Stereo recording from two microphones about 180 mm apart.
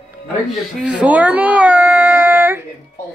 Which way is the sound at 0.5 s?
5° right (ahead or behind).